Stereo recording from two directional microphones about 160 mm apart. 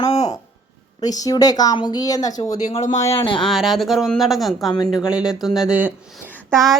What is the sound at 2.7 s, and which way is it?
Speech, 45° left (ahead or behind).